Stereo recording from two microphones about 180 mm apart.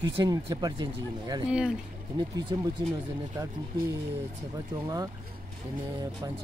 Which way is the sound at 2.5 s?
20° right (ahead or behind).